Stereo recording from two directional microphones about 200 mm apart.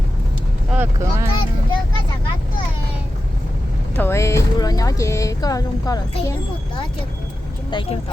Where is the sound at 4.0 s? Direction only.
15° left (ahead or behind).